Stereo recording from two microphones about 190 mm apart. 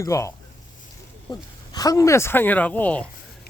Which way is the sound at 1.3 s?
20° left (ahead or behind).